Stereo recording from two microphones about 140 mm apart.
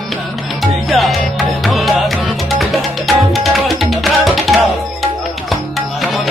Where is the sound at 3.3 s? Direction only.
Centre (ahead or behind).